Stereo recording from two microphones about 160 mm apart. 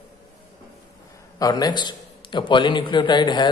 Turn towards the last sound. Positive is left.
turn(degrees=30)  # may be behind; listen again after turning